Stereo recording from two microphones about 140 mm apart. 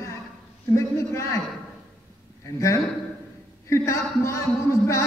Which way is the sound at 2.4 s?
20° left (ahead or behind).